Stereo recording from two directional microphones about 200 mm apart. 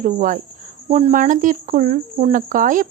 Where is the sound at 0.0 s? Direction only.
40° right (ahead or behind).